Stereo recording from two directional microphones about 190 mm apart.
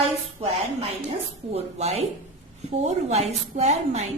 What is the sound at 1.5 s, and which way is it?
A woman's voice, 35° right (ahead or behind).